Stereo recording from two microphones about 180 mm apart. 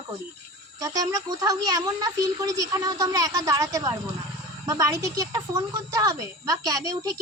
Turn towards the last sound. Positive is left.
turn(degrees=-20)  # may be behind; listen again after turning